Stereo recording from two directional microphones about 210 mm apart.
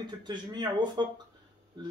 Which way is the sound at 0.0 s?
20° right (ahead or behind).